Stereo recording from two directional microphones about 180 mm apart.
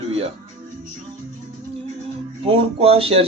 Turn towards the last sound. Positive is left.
turn(degrees=-30)  # may be behind; listen again after turning